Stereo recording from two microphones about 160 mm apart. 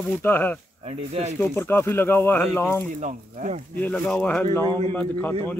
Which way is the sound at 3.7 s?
10° left (ahead or behind).